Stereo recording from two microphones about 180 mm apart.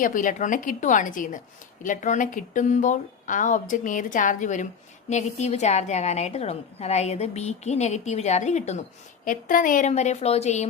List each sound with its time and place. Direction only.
0.0 s a woman's voice: 45° left (ahead or behind)